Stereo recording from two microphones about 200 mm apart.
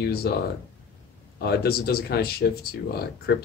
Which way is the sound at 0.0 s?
50° left (ahead or behind).